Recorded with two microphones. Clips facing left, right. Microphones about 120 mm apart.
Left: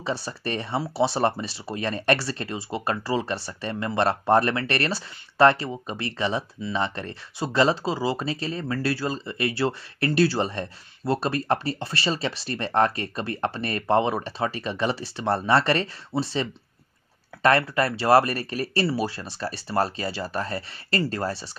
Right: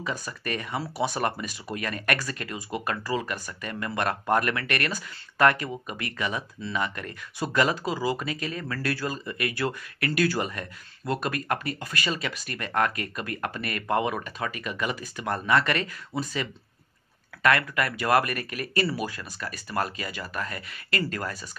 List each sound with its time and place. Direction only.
0.0 s speech: 30° left (ahead or behind)